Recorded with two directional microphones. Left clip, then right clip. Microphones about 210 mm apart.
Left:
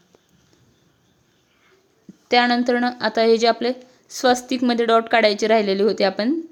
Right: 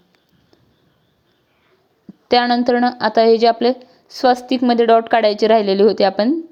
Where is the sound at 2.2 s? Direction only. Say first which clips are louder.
Right 3 dB; 15° right (ahead or behind).